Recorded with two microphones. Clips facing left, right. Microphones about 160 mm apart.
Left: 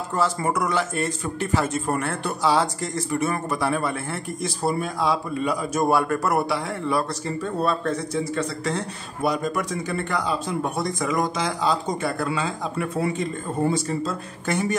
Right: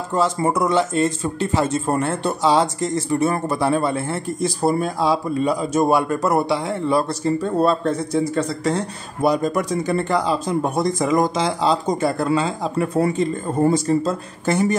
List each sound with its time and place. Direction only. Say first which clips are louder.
0.1 s speech: right 4 dB; 20° right (ahead or behind)
4.6 s speech: right 4 dB; 40° right (ahead or behind)